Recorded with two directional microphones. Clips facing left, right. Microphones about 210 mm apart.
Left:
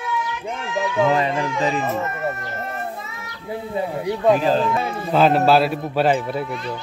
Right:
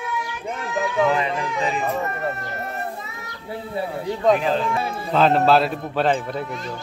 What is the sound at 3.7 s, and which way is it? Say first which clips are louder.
A man's voice: left 2 dB; 15° left (ahead or behind).